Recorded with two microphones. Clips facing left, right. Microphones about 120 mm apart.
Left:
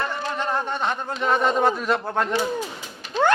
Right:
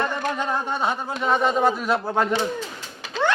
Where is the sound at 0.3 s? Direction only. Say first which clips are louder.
Even; 10° right (ahead or behind).